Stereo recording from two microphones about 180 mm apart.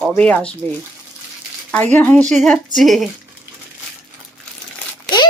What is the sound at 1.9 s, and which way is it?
Speech, 10° left (ahead or behind).